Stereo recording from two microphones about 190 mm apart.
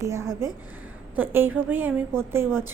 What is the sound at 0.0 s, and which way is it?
A woman's voice, 15° right (ahead or behind).